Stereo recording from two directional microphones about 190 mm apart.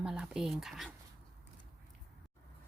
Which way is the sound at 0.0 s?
5° right (ahead or behind).